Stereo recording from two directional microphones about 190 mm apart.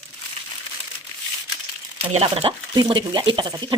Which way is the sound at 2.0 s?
30° right (ahead or behind).